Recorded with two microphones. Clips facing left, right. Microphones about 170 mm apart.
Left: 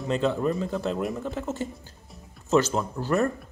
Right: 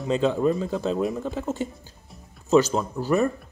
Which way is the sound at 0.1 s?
15° right (ahead or behind).